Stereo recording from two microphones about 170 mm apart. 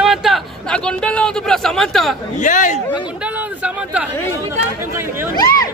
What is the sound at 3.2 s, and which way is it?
Speech, 10° right (ahead or behind).